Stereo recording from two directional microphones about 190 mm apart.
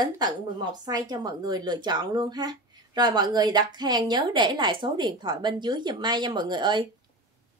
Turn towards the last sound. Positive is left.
turn(degrees=-25)  # may be behind; listen again after turning